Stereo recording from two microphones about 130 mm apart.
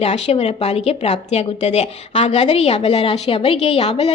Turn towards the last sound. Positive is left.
turn(degrees=55)  # may be behind; listen again after turning